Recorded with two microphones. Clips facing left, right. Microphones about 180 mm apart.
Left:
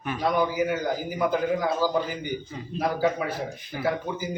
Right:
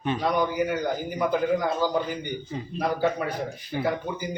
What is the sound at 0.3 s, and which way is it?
A man's voice, 5° left (ahead or behind).